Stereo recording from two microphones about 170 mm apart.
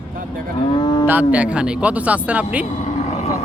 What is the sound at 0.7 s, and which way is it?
Cattle, 25° left (ahead or behind).